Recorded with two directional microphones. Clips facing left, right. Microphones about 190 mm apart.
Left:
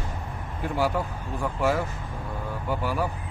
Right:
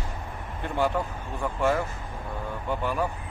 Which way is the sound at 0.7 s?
5° left (ahead or behind).